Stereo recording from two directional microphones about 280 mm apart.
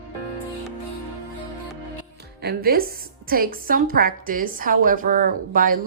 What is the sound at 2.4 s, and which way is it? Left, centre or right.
A woman's voice, right.